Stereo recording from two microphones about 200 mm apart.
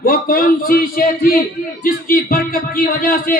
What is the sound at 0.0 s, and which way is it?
A man's voice, 45° left (ahead or behind).